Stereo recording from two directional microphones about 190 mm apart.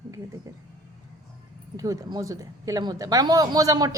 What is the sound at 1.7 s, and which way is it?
Speech, 20° right (ahead or behind).